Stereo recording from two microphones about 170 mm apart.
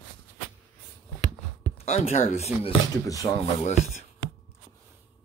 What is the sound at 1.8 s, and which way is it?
Speech, 35° left (ahead or behind).